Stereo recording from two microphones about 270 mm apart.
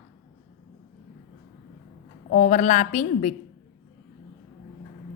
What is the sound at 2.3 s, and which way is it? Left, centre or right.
A woman's voice, left.